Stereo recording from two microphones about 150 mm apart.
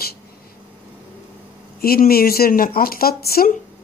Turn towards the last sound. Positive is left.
turn(degrees=80)